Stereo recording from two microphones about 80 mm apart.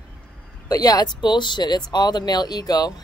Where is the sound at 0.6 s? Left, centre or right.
Left.